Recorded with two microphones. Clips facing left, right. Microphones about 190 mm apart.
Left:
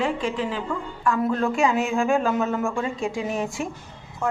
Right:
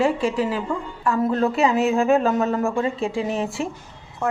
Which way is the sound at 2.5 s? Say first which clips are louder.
Right 3 dB; 35° right (ahead or behind).